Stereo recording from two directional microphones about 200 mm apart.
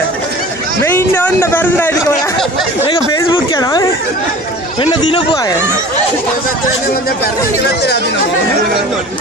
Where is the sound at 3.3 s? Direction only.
25° left (ahead or behind).